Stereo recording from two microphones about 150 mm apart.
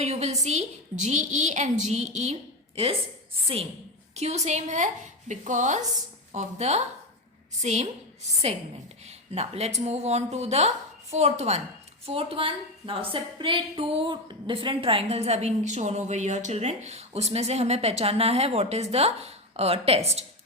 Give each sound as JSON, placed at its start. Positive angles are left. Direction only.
{"t": 0.0, "sound": "a woman's voice", "side_deg": -45}
{"t": 4.1, "sound": "a woman's voice", "side_deg": -50}
{"t": 9.0, "sound": "a woman's voice", "side_deg": -45}